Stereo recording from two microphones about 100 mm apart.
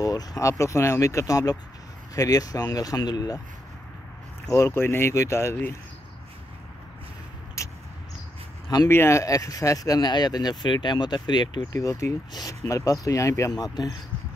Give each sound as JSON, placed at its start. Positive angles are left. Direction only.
{"t": 0.0, "sound": "speech", "side_deg": 40}
{"t": 4.5, "sound": "speech", "side_deg": 30}
{"t": 7.6, "sound": "vehicle", "side_deg": 30}
{"t": 8.8, "sound": "speech", "side_deg": 25}
{"t": 11.5, "sound": "speech", "side_deg": 35}